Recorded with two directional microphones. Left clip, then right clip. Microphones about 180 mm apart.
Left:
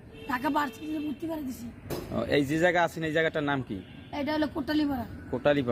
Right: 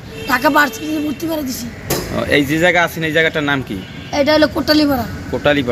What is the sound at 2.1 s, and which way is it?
Speech, 35° left (ahead or behind).